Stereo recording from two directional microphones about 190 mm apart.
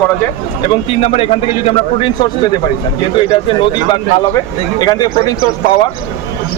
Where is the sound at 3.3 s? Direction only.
25° left (ahead or behind).